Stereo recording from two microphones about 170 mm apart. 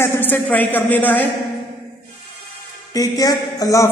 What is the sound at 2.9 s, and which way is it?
Speech, 20° left (ahead or behind).